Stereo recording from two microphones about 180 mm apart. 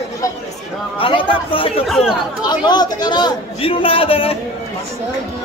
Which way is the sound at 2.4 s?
25° left (ahead or behind).